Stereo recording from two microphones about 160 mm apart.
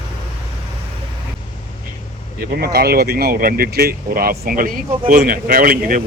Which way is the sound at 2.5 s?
75° right (ahead or behind).